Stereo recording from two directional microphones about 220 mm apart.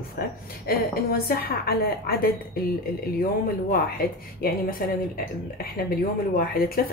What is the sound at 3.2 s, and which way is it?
Speech, 45° left (ahead or behind).